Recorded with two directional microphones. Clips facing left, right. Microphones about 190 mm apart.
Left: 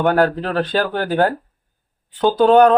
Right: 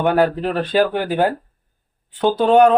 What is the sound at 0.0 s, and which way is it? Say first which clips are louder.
Speech: even; centre (ahead or behind).